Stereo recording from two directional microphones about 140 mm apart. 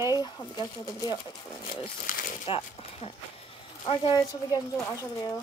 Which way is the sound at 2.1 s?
75° left (ahead or behind).